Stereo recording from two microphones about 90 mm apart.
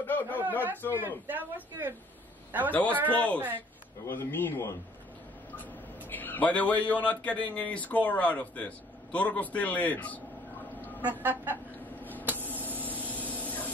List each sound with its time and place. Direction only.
0.0 s a sound: 20° left (ahead or behind)
0.4 s a man's voice: 20° right (ahead or behind)
2.7 s a man's voice: 20° left (ahead or behind)
6.0 s a man's voice: 20° left (ahead or behind)
11.0 s a man's voice: 20° right (ahead or behind)
12.0 s a sound: 20° left (ahead or behind)